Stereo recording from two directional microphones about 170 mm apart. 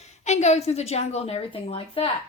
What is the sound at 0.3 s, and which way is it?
A woman's voice, 40° left (ahead or behind).